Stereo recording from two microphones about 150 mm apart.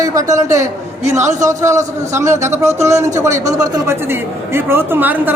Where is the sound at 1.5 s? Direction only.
20° right (ahead or behind).